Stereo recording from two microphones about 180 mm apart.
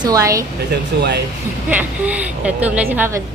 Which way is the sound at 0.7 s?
70° right (ahead or behind).